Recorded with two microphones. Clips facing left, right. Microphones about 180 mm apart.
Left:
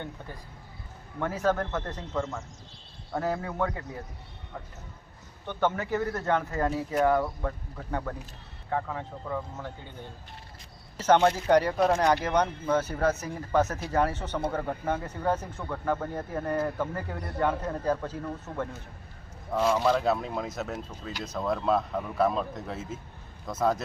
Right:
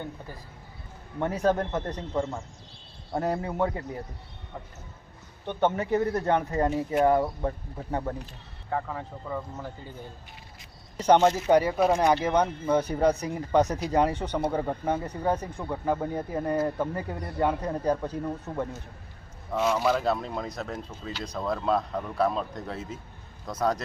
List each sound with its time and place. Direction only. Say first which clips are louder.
1.2 s speech: right 2 dB; 20° right (ahead or behind)
5.5 s speech: right 3 dB; 20° right (ahead or behind)
8.7 s speech: even; centre (ahead or behind)
11.0 s speech: right 2 dB; 15° right (ahead or behind); by 23.8 s 5° left (ahead or behind)